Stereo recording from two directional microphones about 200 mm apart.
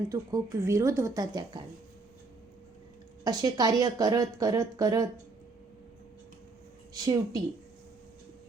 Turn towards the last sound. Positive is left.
turn(degrees=-20)  # may be behind; listen again after turning